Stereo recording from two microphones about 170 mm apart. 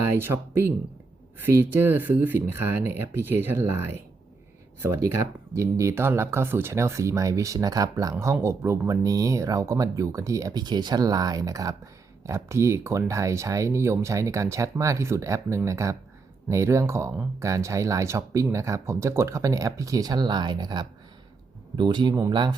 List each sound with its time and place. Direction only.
0.0 s speech: 15° right (ahead or behind)